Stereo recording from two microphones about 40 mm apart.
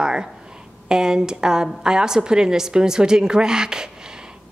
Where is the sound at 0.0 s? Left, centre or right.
Centre.